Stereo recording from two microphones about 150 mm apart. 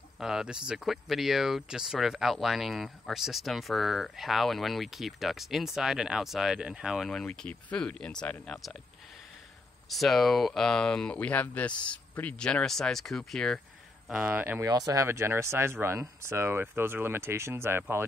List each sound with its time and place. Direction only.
0.2 s speech: 5° right (ahead or behind)
9.8 s speech: centre (ahead or behind)
14.0 s speech: 5° right (ahead or behind)